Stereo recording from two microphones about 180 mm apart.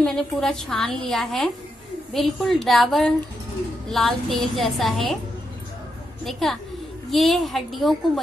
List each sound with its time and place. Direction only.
0.0 s a woman's voice: 5° left (ahead or behind)
6.2 s a woman's voice: centre (ahead or behind)